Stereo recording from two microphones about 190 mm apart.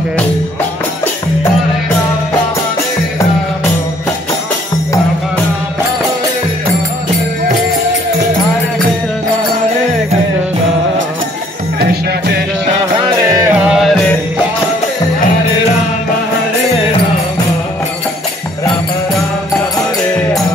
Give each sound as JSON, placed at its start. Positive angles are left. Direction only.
{"t": 13.2, "sound": "music", "side_deg": -15}
{"t": 13.7, "sound": "music", "side_deg": 0}